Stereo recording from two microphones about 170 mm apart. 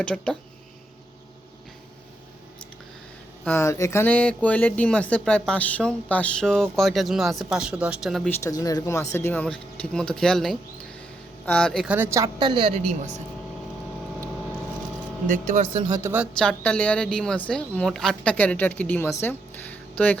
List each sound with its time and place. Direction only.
0.0 s speech: 5° left (ahead or behind)
3.4 s speech: 15° left (ahead or behind)
8.3 s speech: 20° left (ahead or behind)
11.9 s a woman's voice: 15° right (ahead or behind); by 13.2 s 40° right (ahead or behind)
15.3 s speech: 45° right (ahead or behind)
15.7 s speech: 20° right (ahead or behind)
16.2 s speech: 5° left (ahead or behind)
19.2 s a sound: 10° left (ahead or behind)